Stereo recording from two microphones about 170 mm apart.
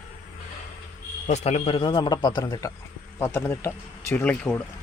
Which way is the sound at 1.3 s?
40° left (ahead or behind).